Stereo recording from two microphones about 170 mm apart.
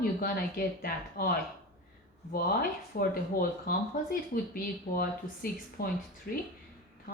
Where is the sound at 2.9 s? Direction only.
60° left (ahead or behind).